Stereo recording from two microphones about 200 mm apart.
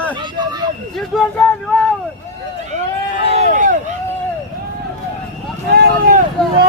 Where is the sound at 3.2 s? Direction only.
35° right (ahead or behind).